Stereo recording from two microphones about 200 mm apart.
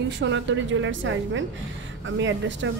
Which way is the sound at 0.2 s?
65° right (ahead or behind).